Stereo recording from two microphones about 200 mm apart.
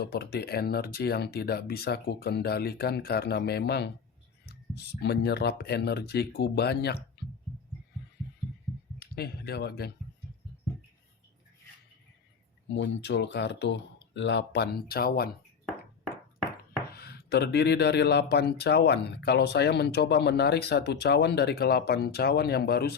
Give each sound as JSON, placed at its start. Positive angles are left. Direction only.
{"t": 0.0, "sound": "speech", "side_deg": 55}
{"t": 9.0, "sound": "speech", "side_deg": 50}
{"t": 12.6, "sound": "speech", "side_deg": 65}
{"t": 16.9, "sound": "speech", "side_deg": 55}